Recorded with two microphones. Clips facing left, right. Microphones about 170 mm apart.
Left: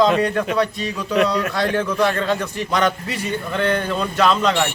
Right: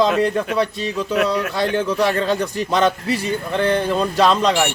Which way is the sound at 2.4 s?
30° right (ahead or behind).